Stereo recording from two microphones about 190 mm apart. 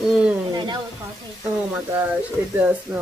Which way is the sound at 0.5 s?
25° right (ahead or behind).